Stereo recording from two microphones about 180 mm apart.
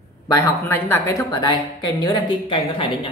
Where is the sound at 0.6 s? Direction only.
10° left (ahead or behind).